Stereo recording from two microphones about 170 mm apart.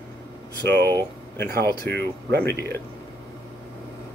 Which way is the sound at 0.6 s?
70° right (ahead or behind).